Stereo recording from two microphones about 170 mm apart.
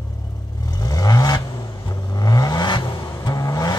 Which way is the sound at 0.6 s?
20° left (ahead or behind).